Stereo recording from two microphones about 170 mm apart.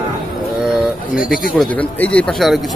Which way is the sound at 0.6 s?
5° right (ahead or behind).